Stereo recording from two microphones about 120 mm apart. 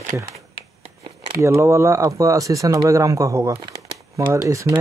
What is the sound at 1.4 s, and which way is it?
Speech, 20° right (ahead or behind).